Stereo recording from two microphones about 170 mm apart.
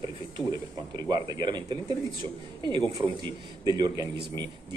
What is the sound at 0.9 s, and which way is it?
Speech, 25° right (ahead or behind).